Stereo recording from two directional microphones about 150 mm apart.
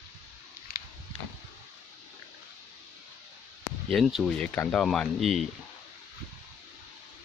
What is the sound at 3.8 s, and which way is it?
Speech, centre (ahead or behind).